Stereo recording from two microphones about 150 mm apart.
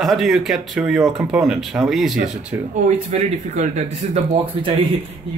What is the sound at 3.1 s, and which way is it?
A man's voice, 50° right (ahead or behind).